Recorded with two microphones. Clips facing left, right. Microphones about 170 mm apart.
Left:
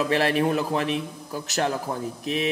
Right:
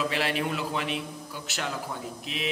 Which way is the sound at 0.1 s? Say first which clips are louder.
Left 7 dB; 45° left (ahead or behind).